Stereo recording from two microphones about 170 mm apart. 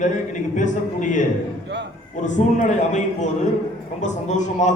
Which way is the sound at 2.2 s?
45° left (ahead or behind).